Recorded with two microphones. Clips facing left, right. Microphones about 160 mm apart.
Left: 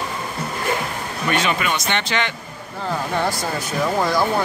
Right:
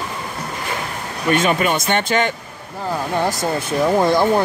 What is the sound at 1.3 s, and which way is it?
Speech, 50° right (ahead or behind).